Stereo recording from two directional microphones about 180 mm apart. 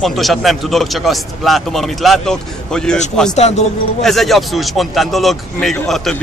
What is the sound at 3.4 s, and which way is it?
Speech, 40° left (ahead or behind).